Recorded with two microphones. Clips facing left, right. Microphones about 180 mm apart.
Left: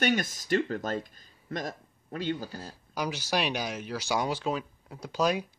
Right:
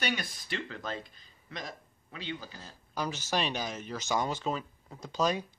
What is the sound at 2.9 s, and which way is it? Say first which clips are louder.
Speech: left 2 dB; 10° left (ahead or behind).